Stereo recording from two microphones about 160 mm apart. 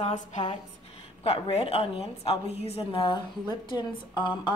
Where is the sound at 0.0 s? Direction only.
50° left (ahead or behind).